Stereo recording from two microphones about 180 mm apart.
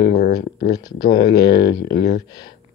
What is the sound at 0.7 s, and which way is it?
Speech, 20° left (ahead or behind).